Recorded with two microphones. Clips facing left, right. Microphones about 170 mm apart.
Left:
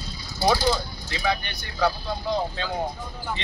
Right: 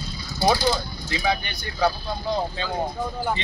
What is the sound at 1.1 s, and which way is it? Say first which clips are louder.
Speech: right 2 dB; 15° right (ahead or behind).